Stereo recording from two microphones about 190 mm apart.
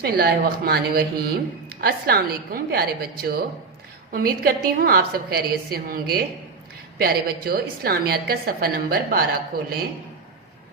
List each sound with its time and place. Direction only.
0.0 s speech: 55° right (ahead or behind)